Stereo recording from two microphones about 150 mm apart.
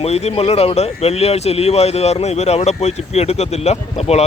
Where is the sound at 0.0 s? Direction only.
45° left (ahead or behind).